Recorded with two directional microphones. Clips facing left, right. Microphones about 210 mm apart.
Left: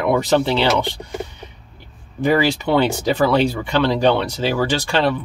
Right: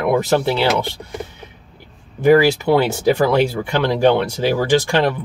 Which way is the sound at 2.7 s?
10° right (ahead or behind).